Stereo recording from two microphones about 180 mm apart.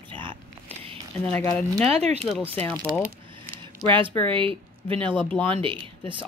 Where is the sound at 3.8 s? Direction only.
30° right (ahead or behind).